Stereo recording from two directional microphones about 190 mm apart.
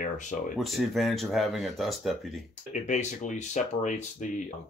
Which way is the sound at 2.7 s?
40° left (ahead or behind).